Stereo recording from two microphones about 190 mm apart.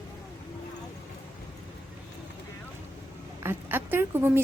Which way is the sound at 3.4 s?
10° right (ahead or behind).